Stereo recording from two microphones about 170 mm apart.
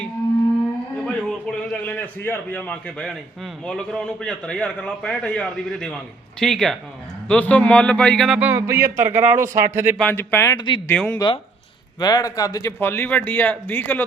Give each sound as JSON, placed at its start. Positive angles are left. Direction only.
{"t": 1.0, "sound": "a man's voice", "side_deg": 5}
{"t": 8.4, "sound": "speech", "side_deg": -15}
{"t": 10.0, "sound": "speech", "side_deg": 10}
{"t": 10.8, "sound": "speech", "side_deg": 10}
{"t": 11.9, "sound": "speech", "side_deg": 20}